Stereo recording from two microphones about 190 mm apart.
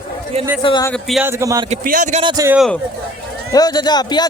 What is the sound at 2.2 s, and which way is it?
Speech, 20° right (ahead or behind).